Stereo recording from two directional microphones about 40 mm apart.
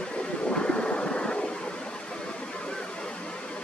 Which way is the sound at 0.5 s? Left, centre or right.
Left.